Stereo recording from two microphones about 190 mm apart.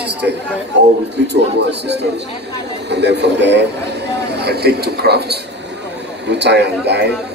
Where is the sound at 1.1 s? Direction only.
60° right (ahead or behind).